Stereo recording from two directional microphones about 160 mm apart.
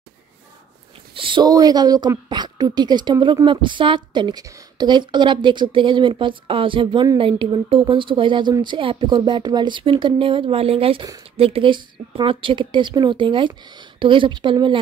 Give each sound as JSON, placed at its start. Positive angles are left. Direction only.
{"t": 1.1, "sound": "a woman's voice", "side_deg": -30}